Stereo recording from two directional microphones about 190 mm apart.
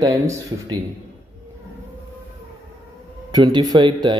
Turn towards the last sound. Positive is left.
turn(degrees=-25)  # may be behind; listen again after turning